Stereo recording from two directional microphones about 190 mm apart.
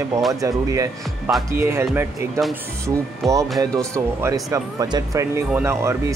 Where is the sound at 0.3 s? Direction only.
15° right (ahead or behind).